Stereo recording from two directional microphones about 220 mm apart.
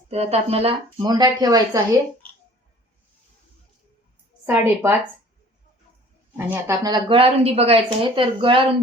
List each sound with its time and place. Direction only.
0.1 s a woman's voice: 30° right (ahead or behind)
4.4 s speech: 10° right (ahead or behind)
6.3 s a woman's voice: 10° right (ahead or behind)